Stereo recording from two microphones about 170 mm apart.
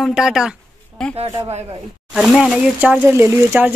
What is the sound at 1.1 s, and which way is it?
Speech, 35° right (ahead or behind).